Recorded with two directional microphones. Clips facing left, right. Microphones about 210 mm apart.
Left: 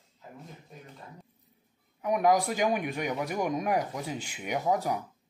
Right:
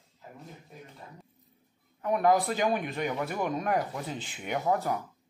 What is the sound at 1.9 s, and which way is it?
Speech, 15° left (ahead or behind).